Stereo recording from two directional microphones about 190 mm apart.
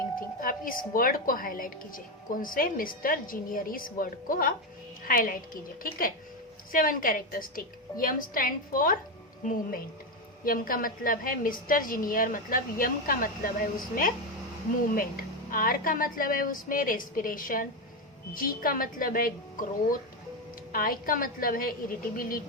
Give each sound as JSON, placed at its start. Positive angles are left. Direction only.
{"t": 0.2, "sound": "a woman's voice", "side_deg": 45}